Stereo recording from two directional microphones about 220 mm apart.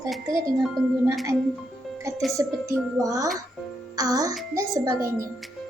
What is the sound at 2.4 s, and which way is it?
A child's voice, 10° right (ahead or behind).